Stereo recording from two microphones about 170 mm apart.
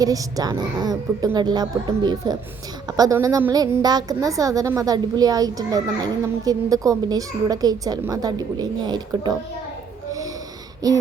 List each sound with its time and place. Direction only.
0.0 s a woman's voice: 20° right (ahead or behind)
10.1 s wheeze: 20° right (ahead or behind)
10.8 s a woman's voice: 20° right (ahead or behind)